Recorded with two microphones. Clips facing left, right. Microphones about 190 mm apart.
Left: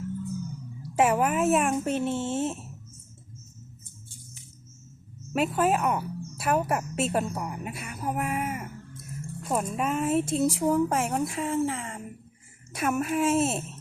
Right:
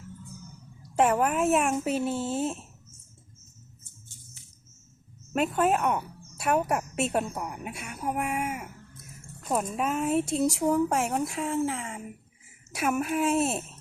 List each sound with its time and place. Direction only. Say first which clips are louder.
0.9 s speech: even; 5° left (ahead or behind)
5.3 s speech: even; centre (ahead or behind)